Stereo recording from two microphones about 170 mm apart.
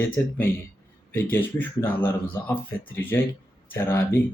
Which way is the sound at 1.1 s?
10° left (ahead or behind).